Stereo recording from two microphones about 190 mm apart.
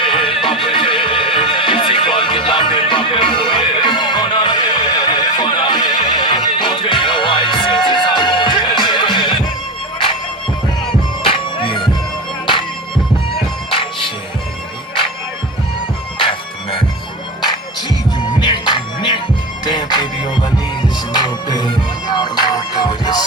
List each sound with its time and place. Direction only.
0.0 s neigh: 25° left (ahead or behind)
11.2 s music: 25° left (ahead or behind)
13.3 s music: 25° left (ahead or behind)
18.2 s music: 25° left (ahead or behind)